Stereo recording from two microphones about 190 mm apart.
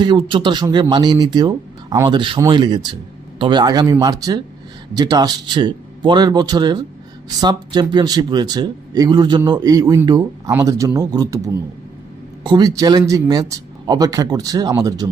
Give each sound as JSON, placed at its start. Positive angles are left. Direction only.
{"t": 0.0, "sound": "speech", "side_deg": -25}